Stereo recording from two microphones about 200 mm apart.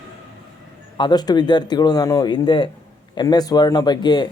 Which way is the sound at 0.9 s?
20° left (ahead or behind).